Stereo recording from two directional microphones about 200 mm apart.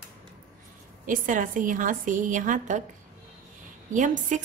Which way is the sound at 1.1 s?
40° right (ahead or behind).